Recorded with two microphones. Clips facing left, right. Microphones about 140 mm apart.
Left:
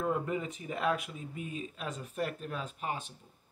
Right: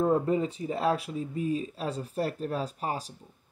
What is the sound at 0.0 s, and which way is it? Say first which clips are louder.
Speech: right 8 dB; 35° right (ahead or behind).